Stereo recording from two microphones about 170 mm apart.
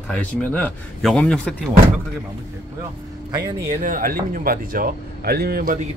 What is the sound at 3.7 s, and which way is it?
Speech, 50° right (ahead or behind).